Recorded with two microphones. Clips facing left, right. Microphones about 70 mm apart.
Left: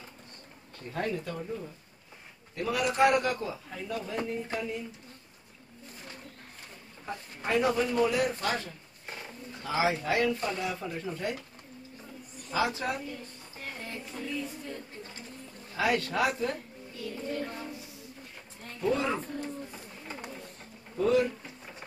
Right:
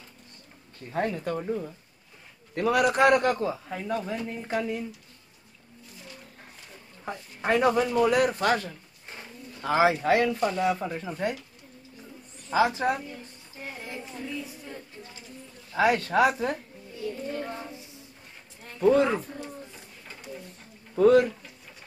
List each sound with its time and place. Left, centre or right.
0.9 s a woman's voice: right
2.5 s a man's voice: right
7.1 s a man's voice: right
9.6 s a man's voice: right
11.0 s a woman's voice: right
12.4 s a woman's voice: right
13.6 s music: centre
15.7 s a woman's voice: right
17.0 s child singing: right
18.8 s a man's voice: right
20.9 s speech: right